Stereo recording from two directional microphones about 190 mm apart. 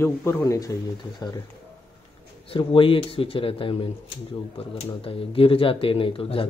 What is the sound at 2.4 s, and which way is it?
Speech, 25° left (ahead or behind).